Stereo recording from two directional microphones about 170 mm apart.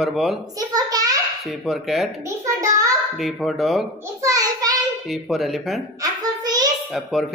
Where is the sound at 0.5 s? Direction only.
20° right (ahead or behind).